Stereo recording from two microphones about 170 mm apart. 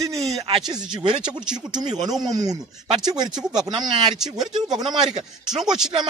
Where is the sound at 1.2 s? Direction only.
5° right (ahead or behind).